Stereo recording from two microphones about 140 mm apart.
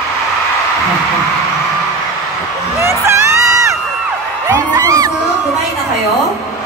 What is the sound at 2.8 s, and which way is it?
Whoop, 20° right (ahead or behind).